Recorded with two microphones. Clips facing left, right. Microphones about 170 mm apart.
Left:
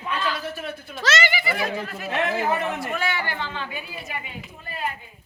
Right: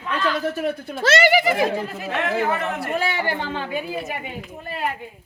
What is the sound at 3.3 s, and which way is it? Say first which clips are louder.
A woman's voice: right 5 dB; 45° right (ahead or behind).